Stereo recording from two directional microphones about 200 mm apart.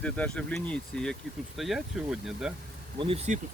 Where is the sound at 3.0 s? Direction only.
30° right (ahead or behind).